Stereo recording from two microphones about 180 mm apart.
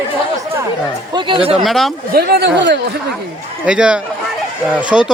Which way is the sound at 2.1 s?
60° right (ahead or behind).